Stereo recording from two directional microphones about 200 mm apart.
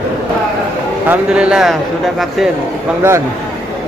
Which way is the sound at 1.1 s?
5° right (ahead or behind).